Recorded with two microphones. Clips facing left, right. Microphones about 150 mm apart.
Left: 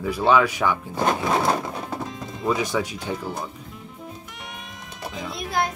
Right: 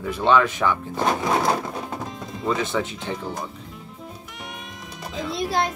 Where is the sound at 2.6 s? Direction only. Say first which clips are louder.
Even; 10° left (ahead or behind).